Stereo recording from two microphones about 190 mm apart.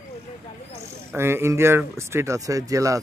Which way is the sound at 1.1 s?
15° right (ahead or behind).